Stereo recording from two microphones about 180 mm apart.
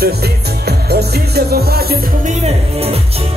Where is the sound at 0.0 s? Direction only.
65° right (ahead or behind).